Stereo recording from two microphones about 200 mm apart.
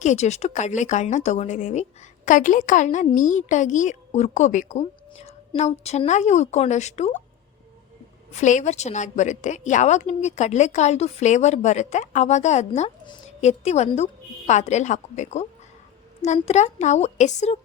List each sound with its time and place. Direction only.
0.0 s a woman's voice: 35° left (ahead or behind)
8.3 s a woman's voice: 35° left (ahead or behind)